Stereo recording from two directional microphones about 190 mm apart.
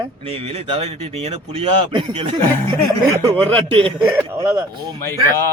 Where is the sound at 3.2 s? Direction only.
30° right (ahead or behind).